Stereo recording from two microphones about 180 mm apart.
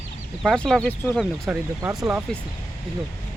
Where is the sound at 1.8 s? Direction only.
15° right (ahead or behind).